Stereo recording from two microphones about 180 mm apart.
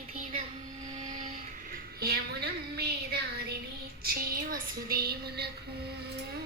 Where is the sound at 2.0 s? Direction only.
65° right (ahead or behind).